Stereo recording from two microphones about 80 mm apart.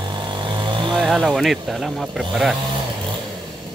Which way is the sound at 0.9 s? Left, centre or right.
Centre.